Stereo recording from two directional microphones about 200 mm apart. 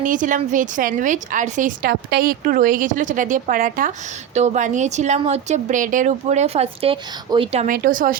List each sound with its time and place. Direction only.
0.0 s a woman's voice: 40° right (ahead or behind)
7.7 s speech: 45° right (ahead or behind)